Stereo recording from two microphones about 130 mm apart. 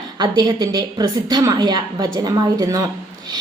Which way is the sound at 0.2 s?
35° right (ahead or behind).